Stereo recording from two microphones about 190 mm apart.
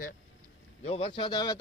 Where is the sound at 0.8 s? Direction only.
30° left (ahead or behind).